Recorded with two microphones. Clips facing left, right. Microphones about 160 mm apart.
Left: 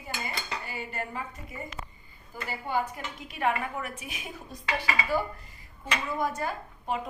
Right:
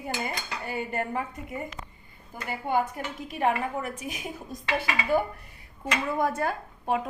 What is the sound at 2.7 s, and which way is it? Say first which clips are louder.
Speech: right 4 dB; 55° right (ahead or behind).